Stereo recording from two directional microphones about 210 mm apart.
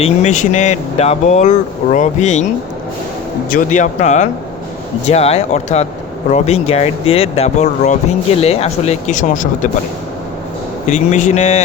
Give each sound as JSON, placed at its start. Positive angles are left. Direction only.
{"t": 0.0, "sound": "speech", "side_deg": 35}
{"t": 3.5, "sound": "speech", "side_deg": 35}
{"t": 10.8, "sound": "speech", "side_deg": 35}